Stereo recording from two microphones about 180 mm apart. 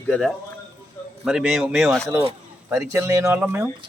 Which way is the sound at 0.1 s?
5° left (ahead or behind).